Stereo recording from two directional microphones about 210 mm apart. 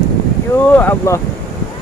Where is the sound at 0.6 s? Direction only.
10° left (ahead or behind).